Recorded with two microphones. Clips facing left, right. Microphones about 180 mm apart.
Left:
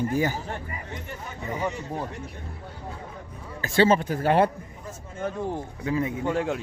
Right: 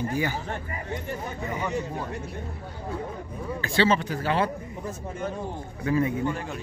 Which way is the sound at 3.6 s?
45° left (ahead or behind).